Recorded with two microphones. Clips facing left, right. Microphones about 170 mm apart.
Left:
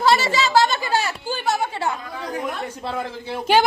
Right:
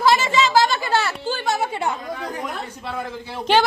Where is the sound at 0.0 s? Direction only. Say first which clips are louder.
Right 1 dB; 35° left (ahead or behind).